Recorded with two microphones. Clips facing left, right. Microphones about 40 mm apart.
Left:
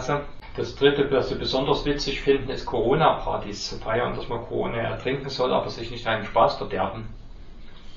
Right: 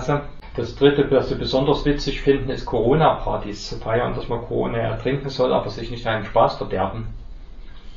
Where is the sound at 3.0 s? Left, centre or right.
Right.